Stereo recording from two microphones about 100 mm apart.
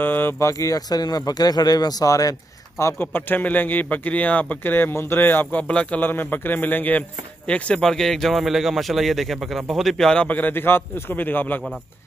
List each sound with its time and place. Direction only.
0.0 s a sound: 20° left (ahead or behind)
0.5 s speech: 35° left (ahead or behind)
2.8 s speech: 20° left (ahead or behind)